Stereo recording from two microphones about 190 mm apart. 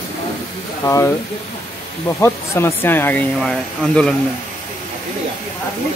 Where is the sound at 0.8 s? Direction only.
15° left (ahead or behind).